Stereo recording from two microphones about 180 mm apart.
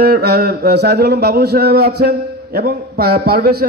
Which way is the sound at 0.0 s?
60° right (ahead or behind).